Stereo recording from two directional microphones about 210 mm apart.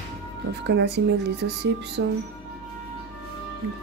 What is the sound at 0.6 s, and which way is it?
Speech, 55° right (ahead or behind).